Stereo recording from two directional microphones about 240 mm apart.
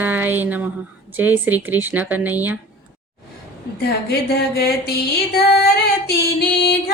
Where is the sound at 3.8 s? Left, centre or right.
Left.